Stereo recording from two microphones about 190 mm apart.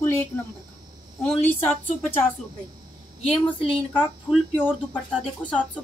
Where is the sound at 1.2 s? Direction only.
10° left (ahead or behind).